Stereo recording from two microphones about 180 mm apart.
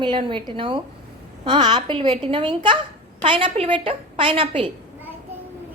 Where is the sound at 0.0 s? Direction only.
25° right (ahead or behind).